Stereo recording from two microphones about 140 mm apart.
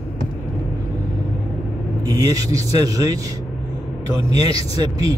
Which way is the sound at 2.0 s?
30° right (ahead or behind).